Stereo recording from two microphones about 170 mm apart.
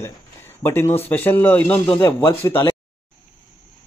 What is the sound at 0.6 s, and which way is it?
Speech, 15° left (ahead or behind).